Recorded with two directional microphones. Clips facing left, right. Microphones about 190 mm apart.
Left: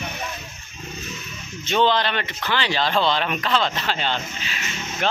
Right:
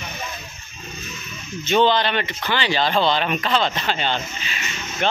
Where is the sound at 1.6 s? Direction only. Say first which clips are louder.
Right 2 dB; 5° right (ahead or behind).